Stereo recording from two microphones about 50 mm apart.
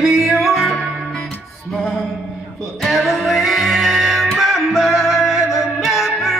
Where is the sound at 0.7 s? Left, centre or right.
Centre.